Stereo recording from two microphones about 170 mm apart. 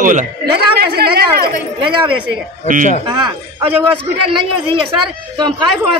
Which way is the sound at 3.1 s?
25° right (ahead or behind).